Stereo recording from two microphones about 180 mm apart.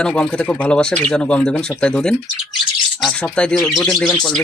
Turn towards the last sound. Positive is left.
turn(degrees=5)  # may be behind; listen again after turning